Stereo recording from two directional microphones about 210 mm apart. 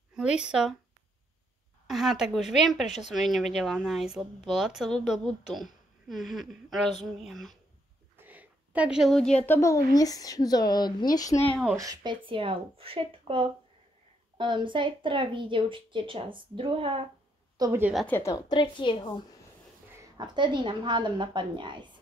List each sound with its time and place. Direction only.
0.1 s speech: 5° right (ahead or behind)
1.9 s a sound: centre (ahead or behind)
2.5 s a woman's voice: centre (ahead or behind)
11.7 s a woman's voice: 15° right (ahead or behind)
17.6 s speech: 15° right (ahead or behind)
17.9 s a woman's voice: 10° left (ahead or behind)
20.2 s a woman's voice: 20° right (ahead or behind)